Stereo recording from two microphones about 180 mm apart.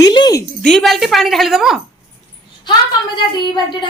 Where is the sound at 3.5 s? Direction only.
25° left (ahead or behind).